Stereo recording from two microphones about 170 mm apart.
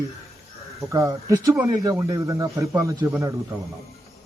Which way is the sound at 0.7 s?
20° right (ahead or behind).